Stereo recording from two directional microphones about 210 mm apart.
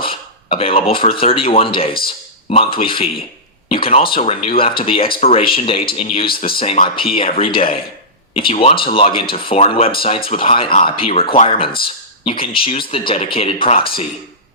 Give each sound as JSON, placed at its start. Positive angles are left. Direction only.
{"t": 0.0, "sound": "speech", "side_deg": 25}